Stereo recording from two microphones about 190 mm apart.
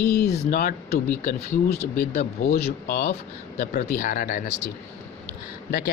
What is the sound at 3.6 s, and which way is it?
Speech, 40° left (ahead or behind).